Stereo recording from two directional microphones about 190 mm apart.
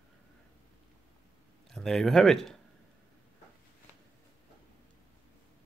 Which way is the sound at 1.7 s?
Centre (ahead or behind).